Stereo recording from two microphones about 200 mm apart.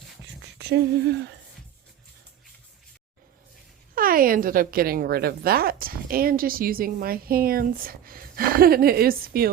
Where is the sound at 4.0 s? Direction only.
45° right (ahead or behind).